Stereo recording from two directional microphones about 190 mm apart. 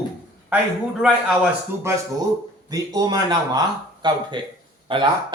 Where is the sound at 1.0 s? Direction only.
5° right (ahead or behind).